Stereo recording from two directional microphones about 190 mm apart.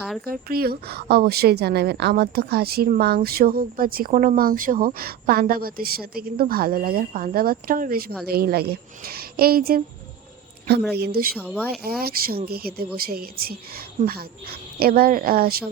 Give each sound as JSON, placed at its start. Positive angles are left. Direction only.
{"t": 0.3, "sound": "a woman's voice", "side_deg": -50}
{"t": 10.9, "sound": "a woman's voice", "side_deg": -55}